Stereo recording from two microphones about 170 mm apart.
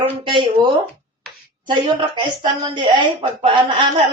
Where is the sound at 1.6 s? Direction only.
25° right (ahead or behind).